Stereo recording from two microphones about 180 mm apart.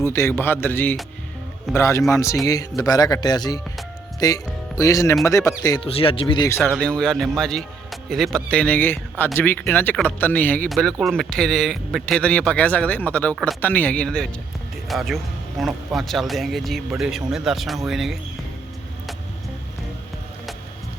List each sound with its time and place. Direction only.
0.0 s a man's voice: 15° left (ahead or behind)
5.9 s a man's voice: 30° left (ahead or behind)
6.6 s speech: centre (ahead or behind)